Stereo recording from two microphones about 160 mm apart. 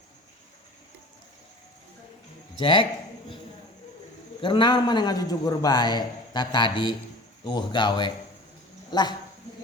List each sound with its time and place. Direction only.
2.6 s a man's voice: 30° left (ahead or behind)
4.4 s a man's voice: 30° left (ahead or behind)